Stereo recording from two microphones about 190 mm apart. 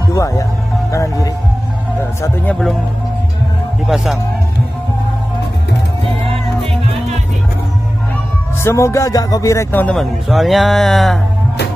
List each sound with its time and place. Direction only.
0.1 s speech: 15° left (ahead or behind)
0.9 s music: 15° left (ahead or behind)
3.8 s speech: centre (ahead or behind)
8.6 s speech: 15° left (ahead or behind)